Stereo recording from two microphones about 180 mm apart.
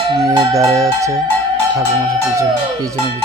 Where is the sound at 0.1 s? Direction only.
20° right (ahead or behind).